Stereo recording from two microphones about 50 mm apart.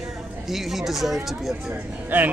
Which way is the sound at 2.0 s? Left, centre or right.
Right.